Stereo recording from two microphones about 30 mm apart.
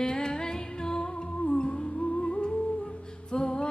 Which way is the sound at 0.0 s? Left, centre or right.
Left.